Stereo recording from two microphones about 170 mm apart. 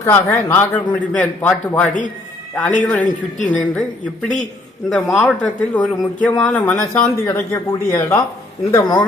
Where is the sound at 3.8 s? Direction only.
5° left (ahead or behind).